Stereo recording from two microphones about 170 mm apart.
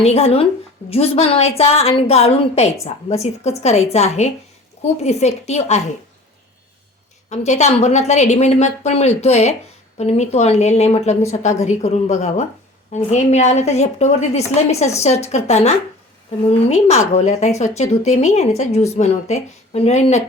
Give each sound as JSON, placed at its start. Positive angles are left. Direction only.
{"t": 0.0, "sound": "a woman's voice", "side_deg": 35}
{"t": 7.3, "sound": "a woman's voice", "side_deg": 40}